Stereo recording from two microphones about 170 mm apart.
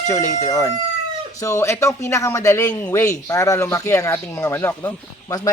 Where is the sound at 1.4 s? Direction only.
15° left (ahead or behind).